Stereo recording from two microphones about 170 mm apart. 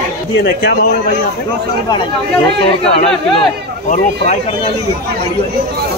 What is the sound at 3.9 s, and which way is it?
Speech, 45° left (ahead or behind).